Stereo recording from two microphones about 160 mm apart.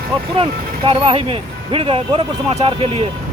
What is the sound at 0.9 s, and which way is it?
Speech, 35° right (ahead or behind).